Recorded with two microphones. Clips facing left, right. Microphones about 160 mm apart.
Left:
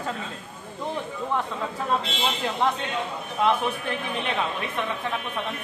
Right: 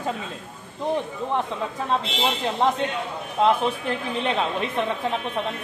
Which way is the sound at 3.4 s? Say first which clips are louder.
Right 3 dB; 25° right (ahead or behind).